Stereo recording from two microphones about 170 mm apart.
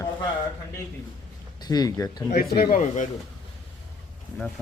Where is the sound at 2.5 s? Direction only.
60° left (ahead or behind).